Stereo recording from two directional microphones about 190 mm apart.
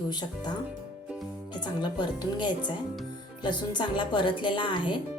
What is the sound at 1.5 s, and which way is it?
Speech, 25° left (ahead or behind).